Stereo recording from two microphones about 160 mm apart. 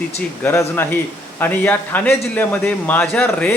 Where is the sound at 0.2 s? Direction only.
15° left (ahead or behind).